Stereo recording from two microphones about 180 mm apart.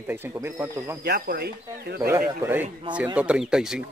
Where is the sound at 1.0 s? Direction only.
65° right (ahead or behind).